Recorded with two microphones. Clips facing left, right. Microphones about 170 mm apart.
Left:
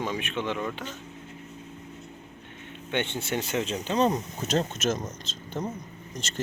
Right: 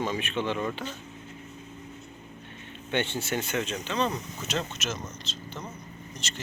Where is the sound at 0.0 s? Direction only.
10° left (ahead or behind).